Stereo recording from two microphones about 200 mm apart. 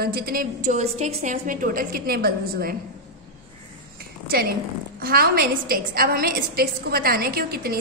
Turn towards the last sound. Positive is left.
turn(degrees=-50)  # may be behind; listen again after turning